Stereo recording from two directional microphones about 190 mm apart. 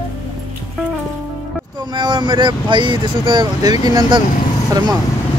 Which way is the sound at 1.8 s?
25° right (ahead or behind).